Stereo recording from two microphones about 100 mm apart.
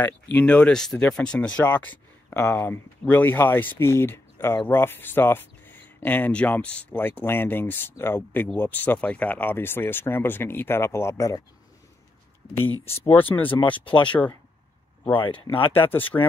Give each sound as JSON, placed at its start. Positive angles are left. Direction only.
{"t": 0.0, "sound": "speech", "side_deg": 15}
{"t": 12.8, "sound": "speech", "side_deg": 75}
{"t": 13.1, "sound": "speech", "side_deg": 20}
{"t": 13.9, "sound": "speech", "side_deg": 55}
{"t": 15.7, "sound": "speech", "side_deg": 20}